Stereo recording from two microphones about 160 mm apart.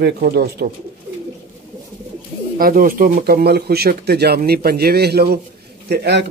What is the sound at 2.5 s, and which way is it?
Speech, 60° right (ahead or behind).